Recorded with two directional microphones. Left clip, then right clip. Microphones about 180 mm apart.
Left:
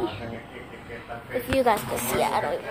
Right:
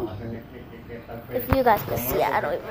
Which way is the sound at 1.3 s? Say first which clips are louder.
Right 2 dB; centre (ahead or behind).